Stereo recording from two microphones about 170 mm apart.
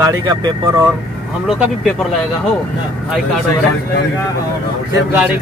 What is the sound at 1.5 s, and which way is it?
Speech, centre (ahead or behind).